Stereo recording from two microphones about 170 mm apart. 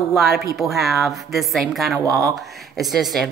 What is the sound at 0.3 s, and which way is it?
Speech, 65° right (ahead or behind).